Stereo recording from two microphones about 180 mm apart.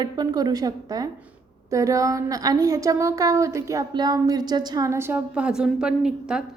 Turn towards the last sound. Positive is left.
turn(degrees=-5)  # may be behind; listen again after turning